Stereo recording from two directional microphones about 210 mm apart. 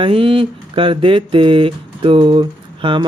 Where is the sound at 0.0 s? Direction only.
25° right (ahead or behind).